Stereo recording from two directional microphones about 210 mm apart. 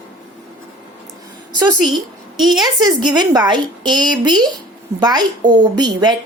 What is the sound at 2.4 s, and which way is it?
Speech, centre (ahead or behind).